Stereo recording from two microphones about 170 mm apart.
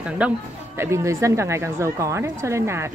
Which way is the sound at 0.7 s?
15° right (ahead or behind).